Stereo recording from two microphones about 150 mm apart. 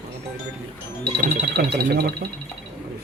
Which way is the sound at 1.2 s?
90° right.